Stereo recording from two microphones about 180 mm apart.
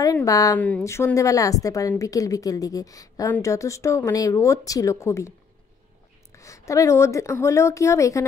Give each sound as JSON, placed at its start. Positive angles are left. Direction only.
{"t": 0.0, "sound": "a woman's voice", "side_deg": 20}
{"t": 0.6, "sound": "a woman's voice", "side_deg": 10}
{"t": 6.3, "sound": "a woman's voice", "side_deg": 15}